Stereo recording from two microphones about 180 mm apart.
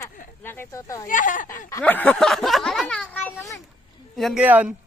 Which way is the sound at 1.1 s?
45° left (ahead or behind).